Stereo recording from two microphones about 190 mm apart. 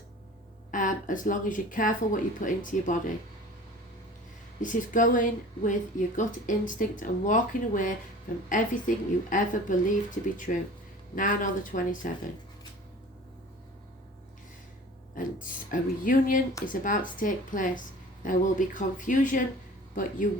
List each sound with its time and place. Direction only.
0.7 s speech: 45° left (ahead or behind)
4.6 s speech: 45° left (ahead or behind)
15.1 s speech: 45° left (ahead or behind)